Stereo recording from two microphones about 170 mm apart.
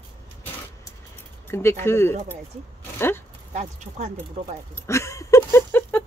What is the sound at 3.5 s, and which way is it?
Speech, 45° right (ahead or behind).